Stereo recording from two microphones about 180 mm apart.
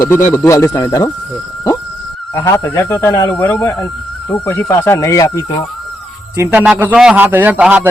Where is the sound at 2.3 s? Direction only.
20° left (ahead or behind).